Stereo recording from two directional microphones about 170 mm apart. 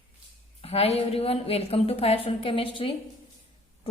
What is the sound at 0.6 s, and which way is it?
A woman's voice, 35° left (ahead or behind).